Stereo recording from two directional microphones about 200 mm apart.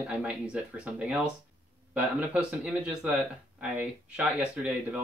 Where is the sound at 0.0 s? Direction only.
5° right (ahead or behind).